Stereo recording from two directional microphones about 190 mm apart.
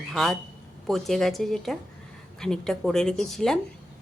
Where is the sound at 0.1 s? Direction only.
Centre (ahead or behind).